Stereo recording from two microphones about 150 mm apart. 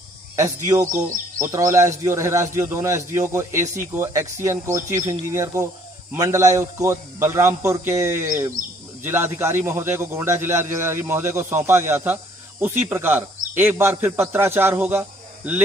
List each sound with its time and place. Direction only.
0.4 s a man's voice: 20° right (ahead or behind)